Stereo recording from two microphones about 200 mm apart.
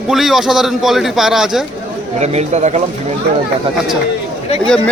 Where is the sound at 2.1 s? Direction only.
35° right (ahead or behind).